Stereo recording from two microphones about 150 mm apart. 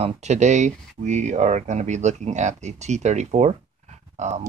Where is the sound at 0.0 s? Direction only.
50° right (ahead or behind).